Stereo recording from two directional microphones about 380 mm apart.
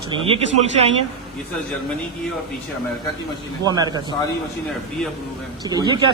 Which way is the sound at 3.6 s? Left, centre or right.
Centre.